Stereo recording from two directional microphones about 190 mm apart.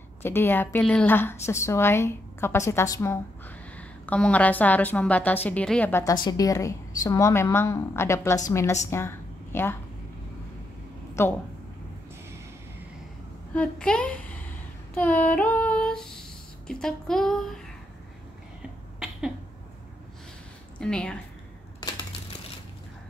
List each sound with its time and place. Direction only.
0.2 s a woman's voice: 10° left (ahead or behind)
8.9 s a sound: 10° left (ahead or behind)
11.2 s a woman's voice: 15° left (ahead or behind)
13.6 s a woman's voice: 5° left (ahead or behind)
15.0 s female singing: 10° left (ahead or behind)
20.7 s a woman's voice: 5° left (ahead or behind)